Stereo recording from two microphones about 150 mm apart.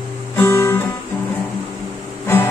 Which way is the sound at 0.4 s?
20° left (ahead or behind).